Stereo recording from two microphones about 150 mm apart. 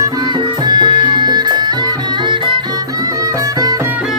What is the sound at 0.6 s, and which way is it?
Music, 30° right (ahead or behind).